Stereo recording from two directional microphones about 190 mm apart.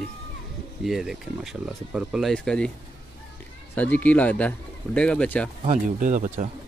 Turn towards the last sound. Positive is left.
turn(degrees=-40)  # may be behind; listen again after turning